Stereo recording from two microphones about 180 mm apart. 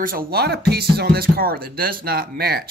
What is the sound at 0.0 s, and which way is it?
Speech, 55° right (ahead or behind).